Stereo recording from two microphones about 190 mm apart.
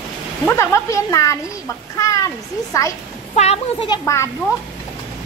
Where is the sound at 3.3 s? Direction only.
35° left (ahead or behind).